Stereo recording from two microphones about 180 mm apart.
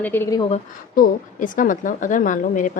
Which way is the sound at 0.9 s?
50° left (ahead or behind).